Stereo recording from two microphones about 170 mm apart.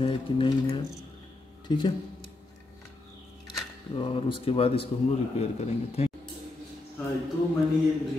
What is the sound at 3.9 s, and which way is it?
Speech, 30° left (ahead or behind).